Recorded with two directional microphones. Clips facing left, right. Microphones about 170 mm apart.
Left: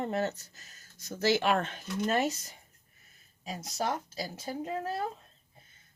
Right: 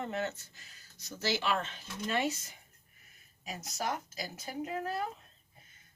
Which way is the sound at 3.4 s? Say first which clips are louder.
Left 4 dB; 30° left (ahead or behind).